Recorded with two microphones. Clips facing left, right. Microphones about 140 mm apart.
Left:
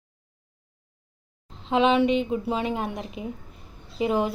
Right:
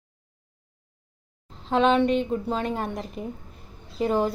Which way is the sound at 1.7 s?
5° left (ahead or behind).